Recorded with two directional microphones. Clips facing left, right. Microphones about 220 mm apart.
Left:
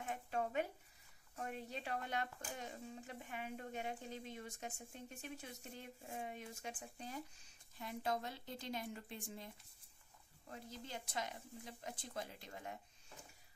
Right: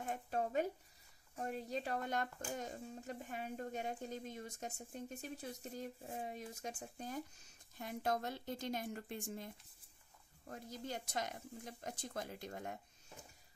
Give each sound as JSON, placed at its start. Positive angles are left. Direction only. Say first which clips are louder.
{"t": 0.0, "sound": "a sound", "louder": "right 2 dB", "side_deg": -40}
{"t": 1.3, "sound": "speech", "louder": "right 5 dB", "side_deg": -35}
{"t": 10.5, "sound": "speech", "louder": "right 4 dB", "side_deg": -45}